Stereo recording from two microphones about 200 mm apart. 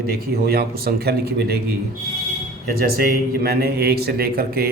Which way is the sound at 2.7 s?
50° right (ahead or behind).